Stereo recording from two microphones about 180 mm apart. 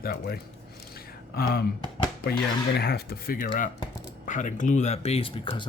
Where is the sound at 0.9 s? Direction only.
55° left (ahead or behind).